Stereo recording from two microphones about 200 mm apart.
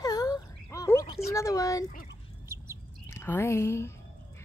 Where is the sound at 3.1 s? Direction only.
10° left (ahead or behind).